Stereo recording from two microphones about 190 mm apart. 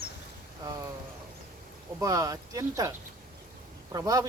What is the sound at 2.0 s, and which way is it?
Speech, 15° right (ahead or behind).